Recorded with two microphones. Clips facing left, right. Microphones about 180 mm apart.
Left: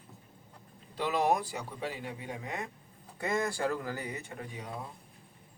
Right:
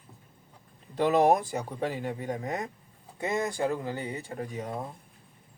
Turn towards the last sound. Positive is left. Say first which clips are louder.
# right 7 dB
turn(degrees=-45)  # may be behind; listen again after turning